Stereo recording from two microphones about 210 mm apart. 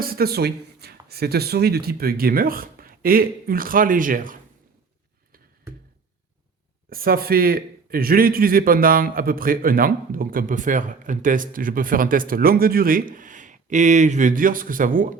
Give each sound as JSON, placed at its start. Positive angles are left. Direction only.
{"t": 0.0, "sound": "speech", "side_deg": -45}
{"t": 6.9, "sound": "a man's voice", "side_deg": -45}